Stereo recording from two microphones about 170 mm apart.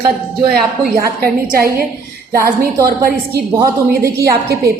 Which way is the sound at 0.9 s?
60° right (ahead or behind).